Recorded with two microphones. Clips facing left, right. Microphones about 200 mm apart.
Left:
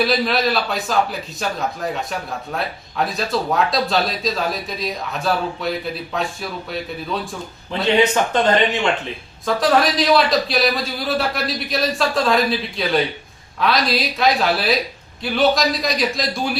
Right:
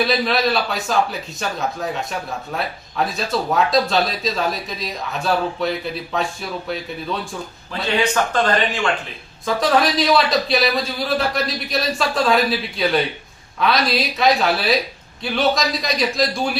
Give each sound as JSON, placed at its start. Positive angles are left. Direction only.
{"t": 0.0, "sound": "speech", "side_deg": 0}
{"t": 7.7, "sound": "speech", "side_deg": 20}
{"t": 9.5, "sound": "speech", "side_deg": 0}